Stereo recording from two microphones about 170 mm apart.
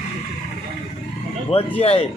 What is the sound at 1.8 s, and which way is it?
Speech, 35° left (ahead or behind).